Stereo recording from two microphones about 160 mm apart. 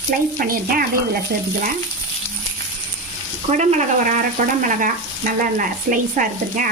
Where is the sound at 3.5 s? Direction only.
50° right (ahead or behind).